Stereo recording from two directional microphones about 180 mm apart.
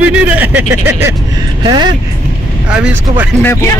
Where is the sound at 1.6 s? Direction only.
25° right (ahead or behind).